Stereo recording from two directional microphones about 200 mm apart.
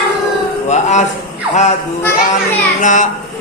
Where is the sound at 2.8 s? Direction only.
40° left (ahead or behind).